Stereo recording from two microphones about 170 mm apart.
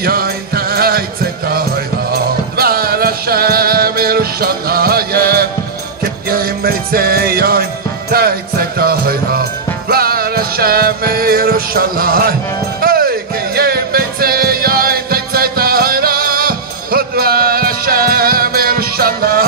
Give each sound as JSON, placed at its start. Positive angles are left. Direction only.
{"t": 0.0, "sound": "music", "side_deg": -65}
{"t": 2.5, "sound": "music", "side_deg": -60}